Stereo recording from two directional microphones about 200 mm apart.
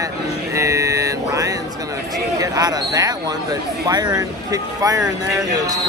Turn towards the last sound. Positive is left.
turn(degrees=-20)  # may be behind; listen again after turning